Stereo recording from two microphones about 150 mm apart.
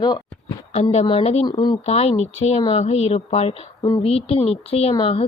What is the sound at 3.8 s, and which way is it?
Speech, 25° left (ahead or behind).